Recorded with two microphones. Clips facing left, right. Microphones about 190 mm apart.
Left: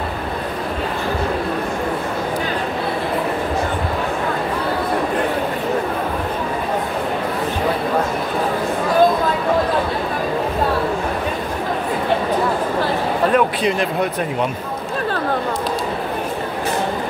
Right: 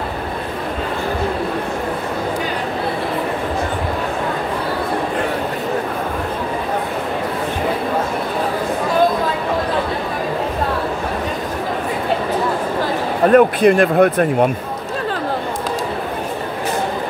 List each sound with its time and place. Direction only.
13.3 s speech: 50° right (ahead or behind)